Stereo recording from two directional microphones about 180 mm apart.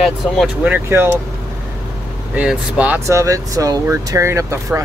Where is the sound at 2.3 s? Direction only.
5° right (ahead or behind).